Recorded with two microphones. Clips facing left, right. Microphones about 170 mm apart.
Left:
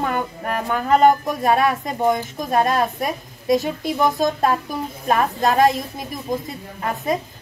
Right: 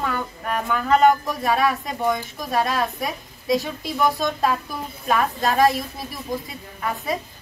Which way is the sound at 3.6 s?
20° left (ahead or behind).